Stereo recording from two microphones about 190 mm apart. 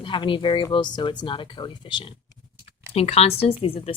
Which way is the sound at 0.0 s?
25° left (ahead or behind).